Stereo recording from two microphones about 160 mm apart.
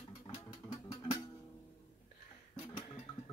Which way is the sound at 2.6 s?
35° left (ahead or behind).